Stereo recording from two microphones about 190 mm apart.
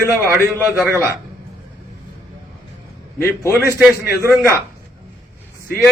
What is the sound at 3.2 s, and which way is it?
Speech, 15° left (ahead or behind).